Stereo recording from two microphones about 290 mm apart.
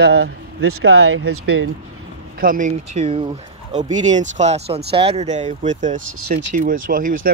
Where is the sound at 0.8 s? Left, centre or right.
Right.